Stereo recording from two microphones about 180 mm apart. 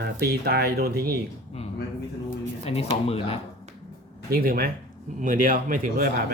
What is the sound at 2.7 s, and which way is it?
Speech, 35° left (ahead or behind).